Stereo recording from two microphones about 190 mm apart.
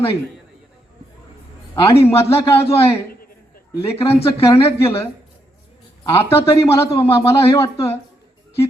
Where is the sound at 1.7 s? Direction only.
15° left (ahead or behind).